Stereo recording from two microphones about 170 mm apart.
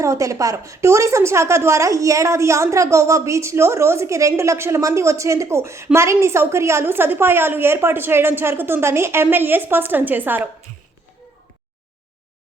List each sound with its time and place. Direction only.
0.0 s speech: 20° right (ahead or behind)